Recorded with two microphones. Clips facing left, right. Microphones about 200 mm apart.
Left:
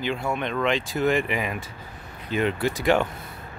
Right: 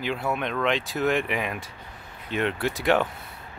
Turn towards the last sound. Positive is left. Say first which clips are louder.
# left 1 dB
turn(degrees=0)  # may be behind; listen again after turning